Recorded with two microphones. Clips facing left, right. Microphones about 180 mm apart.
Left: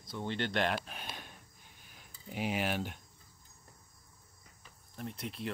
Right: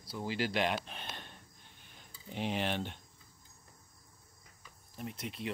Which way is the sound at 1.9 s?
5° left (ahead or behind).